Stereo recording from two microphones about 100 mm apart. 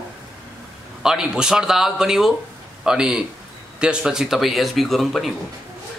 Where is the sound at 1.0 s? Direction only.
5° right (ahead or behind).